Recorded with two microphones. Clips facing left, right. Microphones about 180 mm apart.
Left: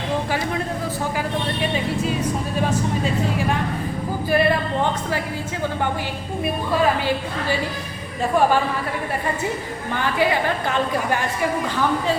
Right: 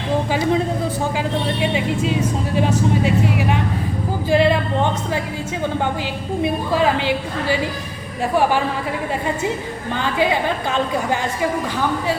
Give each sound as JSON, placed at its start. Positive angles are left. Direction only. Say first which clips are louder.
{"t": 1.6, "sound": "a woman's voice", "louder": "right 2 dB", "side_deg": -15}
{"t": 10.0, "sound": "a woman's voice", "louder": "right 1 dB", "side_deg": -15}